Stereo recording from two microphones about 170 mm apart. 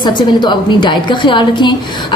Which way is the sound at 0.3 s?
25° left (ahead or behind).